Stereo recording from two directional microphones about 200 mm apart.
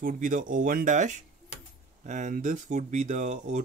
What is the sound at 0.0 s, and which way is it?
Speech, 40° right (ahead or behind).